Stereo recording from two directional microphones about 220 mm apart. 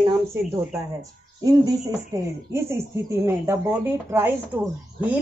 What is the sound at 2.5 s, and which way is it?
Speech, 10° right (ahead or behind).